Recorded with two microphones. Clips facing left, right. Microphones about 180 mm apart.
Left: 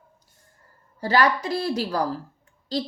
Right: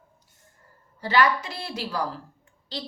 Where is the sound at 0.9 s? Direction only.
40° left (ahead or behind).